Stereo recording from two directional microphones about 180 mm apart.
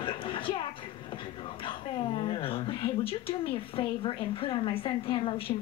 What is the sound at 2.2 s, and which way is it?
Speech, 30° left (ahead or behind).